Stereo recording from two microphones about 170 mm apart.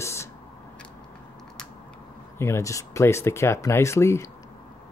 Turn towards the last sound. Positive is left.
turn(degrees=15)  # may be behind; listen again after turning